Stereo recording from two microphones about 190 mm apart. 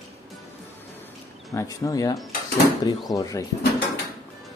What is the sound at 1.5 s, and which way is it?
Speech, 20° left (ahead or behind).